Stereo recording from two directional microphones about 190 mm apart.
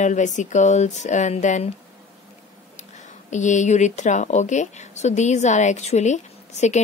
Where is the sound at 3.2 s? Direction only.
40° left (ahead or behind).